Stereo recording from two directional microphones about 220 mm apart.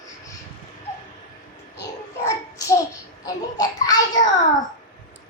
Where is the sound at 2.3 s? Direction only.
15° left (ahead or behind).